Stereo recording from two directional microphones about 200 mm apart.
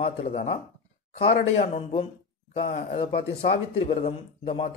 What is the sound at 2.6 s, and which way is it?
A man's voice, 30° left (ahead or behind).